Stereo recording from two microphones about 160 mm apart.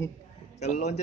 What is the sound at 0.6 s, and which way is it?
Speech, 45° left (ahead or behind).